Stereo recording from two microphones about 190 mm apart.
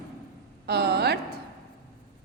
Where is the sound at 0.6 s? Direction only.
60° right (ahead or behind).